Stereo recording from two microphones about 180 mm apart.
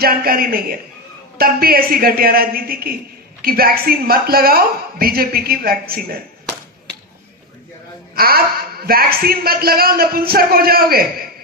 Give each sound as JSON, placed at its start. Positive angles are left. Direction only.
{"t": 0.0, "sound": "a woman's voice", "side_deg": -55}
{"t": 8.1, "sound": "a woman's voice", "side_deg": -55}